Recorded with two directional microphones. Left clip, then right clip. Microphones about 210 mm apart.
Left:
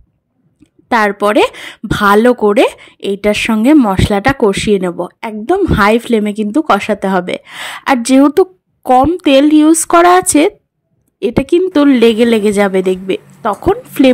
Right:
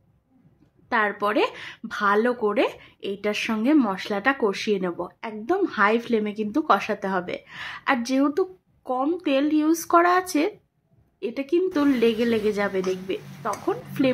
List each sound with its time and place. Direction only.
0.8 s speech: 45° left (ahead or behind)